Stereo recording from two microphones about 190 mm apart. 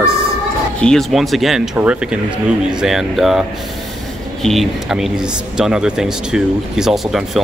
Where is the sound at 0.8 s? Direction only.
Centre (ahead or behind).